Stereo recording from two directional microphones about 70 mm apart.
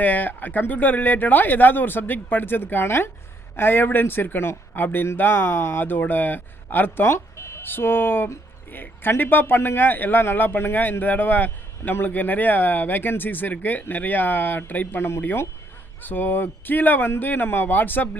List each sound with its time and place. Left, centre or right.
0.0 s speech: left